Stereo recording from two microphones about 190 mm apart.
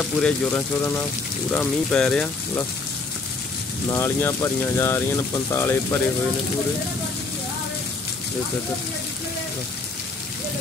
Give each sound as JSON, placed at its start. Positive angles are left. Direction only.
{"t": 0.0, "sound": "speech", "side_deg": 10}
{"t": 3.9, "sound": "speech", "side_deg": 15}